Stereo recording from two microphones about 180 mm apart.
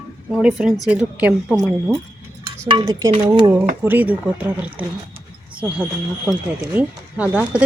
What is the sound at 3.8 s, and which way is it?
Speech, 10° right (ahead or behind).